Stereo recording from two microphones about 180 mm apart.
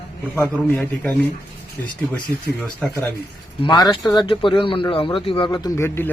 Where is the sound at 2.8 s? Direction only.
5° left (ahead or behind).